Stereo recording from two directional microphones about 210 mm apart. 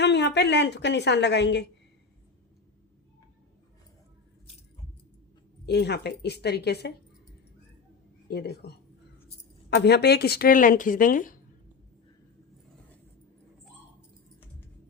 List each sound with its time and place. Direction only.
0.0 s a woman's voice: 55° left (ahead or behind)
5.6 s speech: 55° left (ahead or behind)
8.3 s speech: 50° left (ahead or behind)